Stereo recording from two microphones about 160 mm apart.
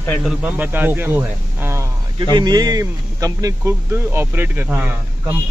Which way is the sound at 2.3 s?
25° right (ahead or behind).